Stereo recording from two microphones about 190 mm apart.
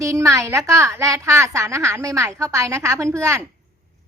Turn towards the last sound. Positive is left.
turn(degrees=-15)  # may be behind; listen again after turning